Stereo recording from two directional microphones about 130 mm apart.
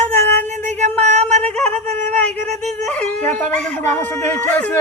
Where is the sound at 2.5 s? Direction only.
60° right (ahead or behind).